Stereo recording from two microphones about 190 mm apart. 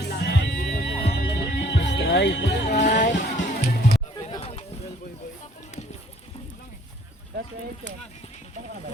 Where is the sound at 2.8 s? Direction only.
45° left (ahead or behind).